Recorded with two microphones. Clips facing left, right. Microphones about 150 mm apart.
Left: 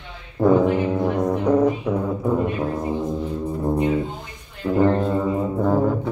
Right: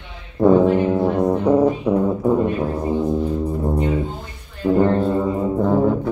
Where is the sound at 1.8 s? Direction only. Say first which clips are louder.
Right 5 dB; 15° right (ahead or behind).